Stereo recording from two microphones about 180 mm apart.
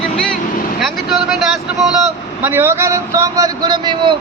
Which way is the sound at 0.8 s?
Centre (ahead or behind).